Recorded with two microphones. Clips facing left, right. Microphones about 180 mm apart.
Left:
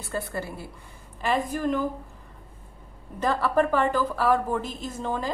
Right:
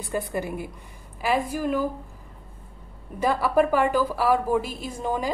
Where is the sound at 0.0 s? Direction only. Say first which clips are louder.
Right 3 dB; 15° right (ahead or behind).